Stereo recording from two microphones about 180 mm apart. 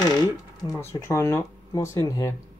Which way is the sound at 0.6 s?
15° left (ahead or behind).